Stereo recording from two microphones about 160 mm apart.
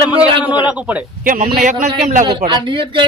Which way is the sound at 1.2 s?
60° right (ahead or behind).